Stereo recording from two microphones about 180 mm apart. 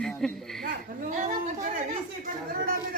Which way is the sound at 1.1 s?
40° right (ahead or behind).